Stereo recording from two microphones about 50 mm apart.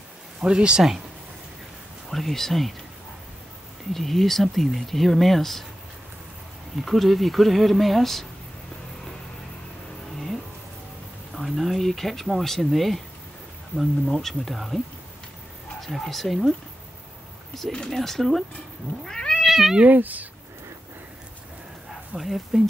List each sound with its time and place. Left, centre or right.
0.4 s speech: centre
2.0 s speech: centre
3.9 s speech: centre
6.8 s speech: centre
11.3 s speech: centre
15.8 s speech: centre
17.6 s speech: centre
19.0 s cat: centre
19.4 s cat: centre
19.9 s speech: right
22.1 s speech: centre